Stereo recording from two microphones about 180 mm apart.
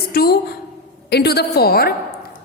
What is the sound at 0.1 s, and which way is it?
A woman's voice, 60° left (ahead or behind).